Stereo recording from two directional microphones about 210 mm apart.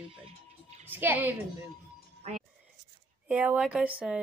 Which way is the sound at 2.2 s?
30° right (ahead or behind).